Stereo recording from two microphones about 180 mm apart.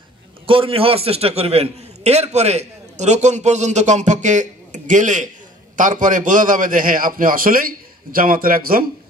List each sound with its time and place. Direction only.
0.5 s a man's voice: 30° right (ahead or behind); by 8.8 s 55° right (ahead or behind)